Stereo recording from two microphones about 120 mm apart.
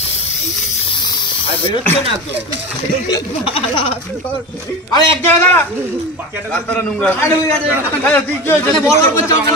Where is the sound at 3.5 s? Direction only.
50° left (ahead or behind).